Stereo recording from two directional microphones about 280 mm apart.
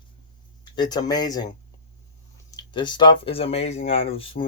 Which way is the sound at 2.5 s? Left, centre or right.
Centre.